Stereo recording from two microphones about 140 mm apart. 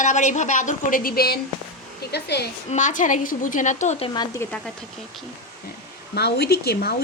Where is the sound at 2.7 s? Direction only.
60° left (ahead or behind).